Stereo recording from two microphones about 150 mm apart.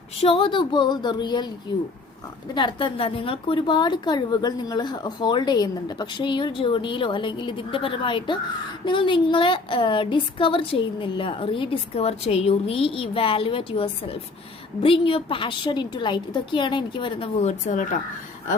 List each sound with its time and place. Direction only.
0.2 s a woman's voice: 35° left (ahead or behind)
17.4 s speech: 55° left (ahead or behind)